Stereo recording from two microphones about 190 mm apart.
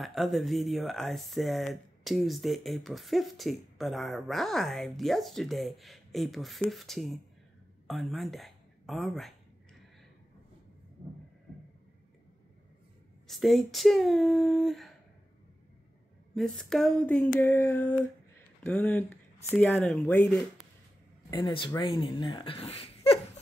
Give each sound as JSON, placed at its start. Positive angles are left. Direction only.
{"t": 0.0, "sound": "speech", "side_deg": 0}
{"t": 13.3, "sound": "speech", "side_deg": 0}
{"t": 16.3, "sound": "speech", "side_deg": 5}
{"t": 21.3, "sound": "speech", "side_deg": 20}